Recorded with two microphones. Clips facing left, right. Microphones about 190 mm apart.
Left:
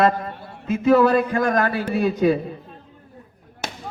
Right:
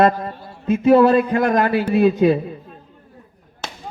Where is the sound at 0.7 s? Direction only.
25° right (ahead or behind).